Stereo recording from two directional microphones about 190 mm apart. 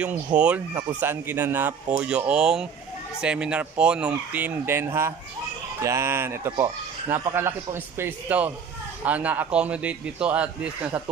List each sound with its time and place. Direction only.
0.0 s speech: 5° right (ahead or behind)